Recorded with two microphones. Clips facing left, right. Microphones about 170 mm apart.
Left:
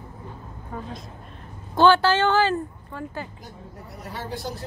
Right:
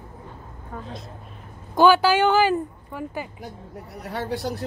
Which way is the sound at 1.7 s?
10° right (ahead or behind).